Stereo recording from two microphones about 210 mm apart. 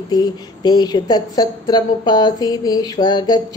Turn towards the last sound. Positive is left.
turn(degrees=20)  # may be behind; listen again after turning